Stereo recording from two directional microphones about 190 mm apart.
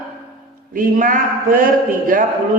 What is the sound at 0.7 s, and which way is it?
Speech, 45° right (ahead or behind).